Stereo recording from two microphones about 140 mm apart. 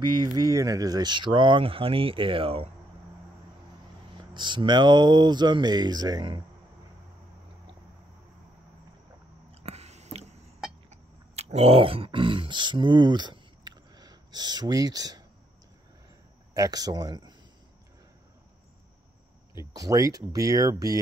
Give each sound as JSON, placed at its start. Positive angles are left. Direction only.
{"t": 0.2, "sound": "speech", "side_deg": -25}
{"t": 4.2, "sound": "speech", "side_deg": -35}
{"t": 9.5, "sound": "a sound", "side_deg": -45}
{"t": 16.5, "sound": "speech", "side_deg": -25}
{"t": 19.5, "sound": "speech", "side_deg": -20}